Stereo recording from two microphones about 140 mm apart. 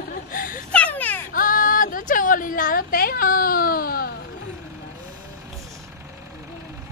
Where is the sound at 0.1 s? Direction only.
85° left.